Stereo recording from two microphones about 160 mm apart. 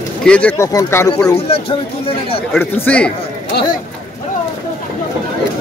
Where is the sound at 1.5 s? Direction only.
35° left (ahead or behind).